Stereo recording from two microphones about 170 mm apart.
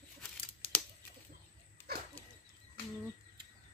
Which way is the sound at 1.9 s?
65° right (ahead or behind).